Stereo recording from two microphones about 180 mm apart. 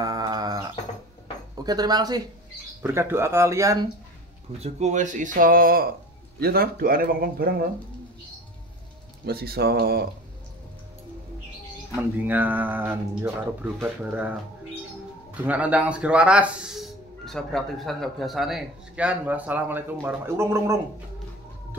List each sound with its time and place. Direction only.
0.0 s bird: 20° right (ahead or behind)
1.5 s speech: 20° right (ahead or behind)
4.6 s speech: 35° right (ahead or behind); by 7.6 s 60° right (ahead or behind)
9.2 s speech: 60° right (ahead or behind)
11.9 s speech: 10° right (ahead or behind)
15.4 s speech: 10° right (ahead or behind)